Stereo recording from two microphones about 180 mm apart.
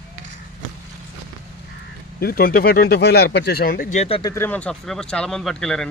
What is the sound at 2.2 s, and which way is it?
Speech, 55° left (ahead or behind).